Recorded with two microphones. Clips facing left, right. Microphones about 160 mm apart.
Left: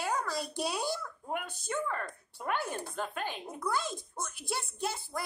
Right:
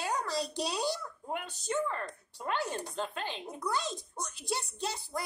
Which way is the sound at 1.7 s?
25° right (ahead or behind).